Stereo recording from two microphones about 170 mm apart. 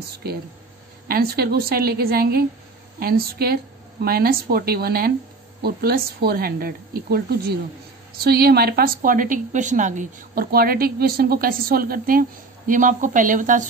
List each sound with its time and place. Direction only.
1.0 s speech: 65° right (ahead or behind)